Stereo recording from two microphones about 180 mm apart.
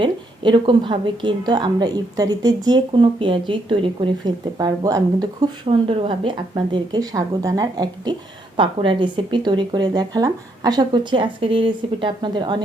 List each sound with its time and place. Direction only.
0.0 s speech: 25° right (ahead or behind)
5.6 s speech: 30° right (ahead or behind)